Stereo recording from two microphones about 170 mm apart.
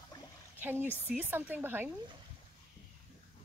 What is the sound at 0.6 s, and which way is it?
Speech, 10° right (ahead or behind).